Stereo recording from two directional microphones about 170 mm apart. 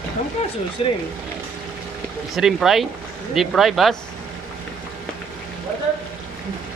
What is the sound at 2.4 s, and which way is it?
Speech, 5° right (ahead or behind).